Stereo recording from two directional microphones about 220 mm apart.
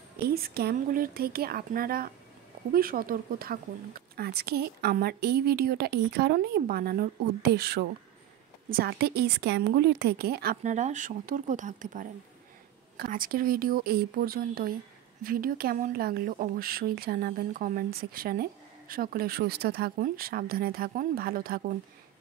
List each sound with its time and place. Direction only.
0.3 s a woman's voice: 45° right (ahead or behind)